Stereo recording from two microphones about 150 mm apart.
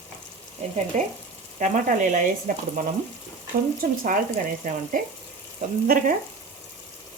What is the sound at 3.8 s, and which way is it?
Frying, 75° right (ahead or behind).